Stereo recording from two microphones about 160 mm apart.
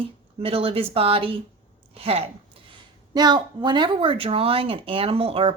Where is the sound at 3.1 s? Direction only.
25° right (ahead or behind).